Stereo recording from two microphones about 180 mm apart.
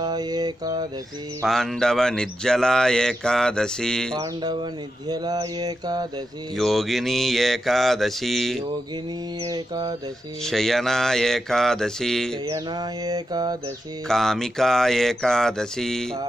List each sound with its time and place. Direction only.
0.0 s bird: 20° right (ahead or behind)
1.4 s speech: centre (ahead or behind)
4.2 s bird: 25° right (ahead or behind)
6.5 s speech: centre (ahead or behind)
9.4 s bird: 25° right (ahead or behind)
10.4 s speech: centre (ahead or behind)
12.4 s bird: 20° right (ahead or behind)
14.0 s speech: centre (ahead or behind)